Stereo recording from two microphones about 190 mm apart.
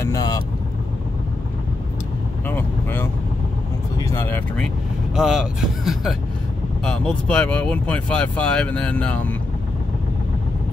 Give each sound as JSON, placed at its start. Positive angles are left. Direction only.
{"t": 0.0, "sound": "vehicle", "side_deg": 20}
{"t": 2.4, "sound": "vehicle", "side_deg": 10}
{"t": 5.1, "sound": "speech", "side_deg": 0}